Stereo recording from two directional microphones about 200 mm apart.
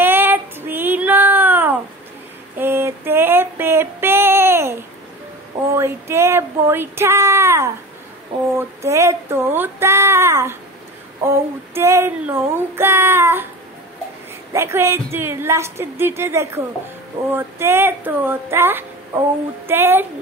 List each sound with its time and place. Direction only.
0.0 s child singing: 10° right (ahead or behind)
2.5 s female singing: 10° right (ahead or behind)
5.7 s a sound: 15° right (ahead or behind)
8.5 s female singing: 15° right (ahead or behind)
11.2 s child singing: 15° right (ahead or behind)
14.5 s speech: 15° right (ahead or behind)